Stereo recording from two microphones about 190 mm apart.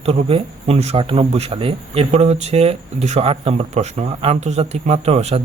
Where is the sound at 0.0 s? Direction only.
30° right (ahead or behind).